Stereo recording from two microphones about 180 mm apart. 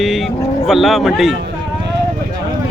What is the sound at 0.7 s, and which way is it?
Speech, centre (ahead or behind).